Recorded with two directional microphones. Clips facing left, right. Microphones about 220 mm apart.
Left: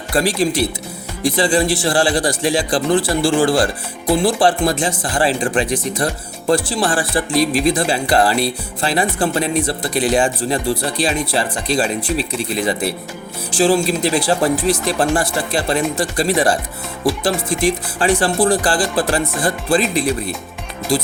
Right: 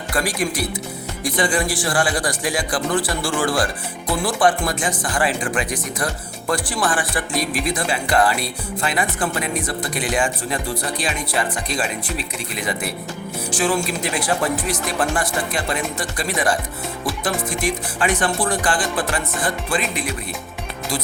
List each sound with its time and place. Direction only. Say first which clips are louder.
0.1 s a man's voice: left 6 dB; 30° left (ahead or behind)